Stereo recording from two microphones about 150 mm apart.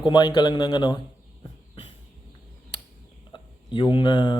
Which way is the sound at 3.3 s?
30° left (ahead or behind).